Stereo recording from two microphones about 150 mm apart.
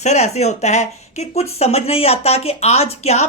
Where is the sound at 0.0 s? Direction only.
45° left (ahead or behind).